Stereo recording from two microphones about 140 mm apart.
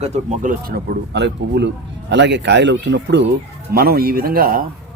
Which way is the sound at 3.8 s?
90° right.